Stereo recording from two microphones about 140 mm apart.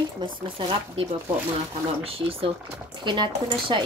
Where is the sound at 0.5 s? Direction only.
40° right (ahead or behind).